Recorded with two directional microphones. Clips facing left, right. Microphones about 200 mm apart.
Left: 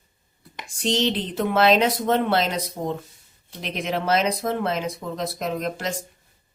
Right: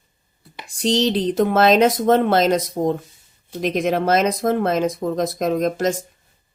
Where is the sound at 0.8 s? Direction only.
35° right (ahead or behind).